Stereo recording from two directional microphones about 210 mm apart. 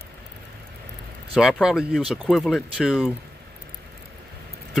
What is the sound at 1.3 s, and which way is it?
Speech, centre (ahead or behind).